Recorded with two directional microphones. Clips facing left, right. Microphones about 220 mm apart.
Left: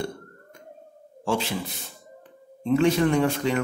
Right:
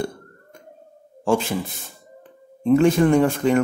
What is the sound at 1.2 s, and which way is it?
Speech, 50° right (ahead or behind).